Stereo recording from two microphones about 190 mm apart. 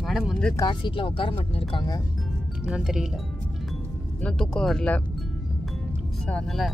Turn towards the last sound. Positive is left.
turn(degrees=0)  # may be behind; listen again after turning